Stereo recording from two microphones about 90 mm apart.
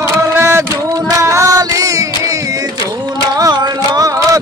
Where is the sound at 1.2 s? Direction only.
35° right (ahead or behind).